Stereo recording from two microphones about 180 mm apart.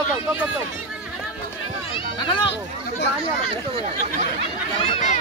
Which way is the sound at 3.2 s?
30° right (ahead or behind).